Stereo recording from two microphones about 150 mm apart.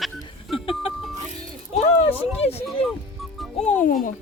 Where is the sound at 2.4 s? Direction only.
40° left (ahead or behind).